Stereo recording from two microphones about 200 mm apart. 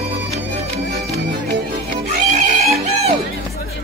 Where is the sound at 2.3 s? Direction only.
30° right (ahead or behind).